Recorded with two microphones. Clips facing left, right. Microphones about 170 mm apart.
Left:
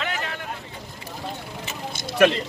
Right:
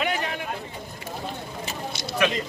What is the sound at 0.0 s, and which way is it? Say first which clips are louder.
Vehicle: right 3 dB; 15° right (ahead or behind).